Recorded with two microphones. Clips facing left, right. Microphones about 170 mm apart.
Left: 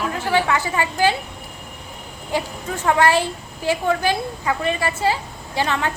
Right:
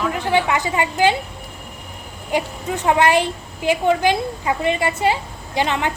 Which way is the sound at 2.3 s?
15° right (ahead or behind).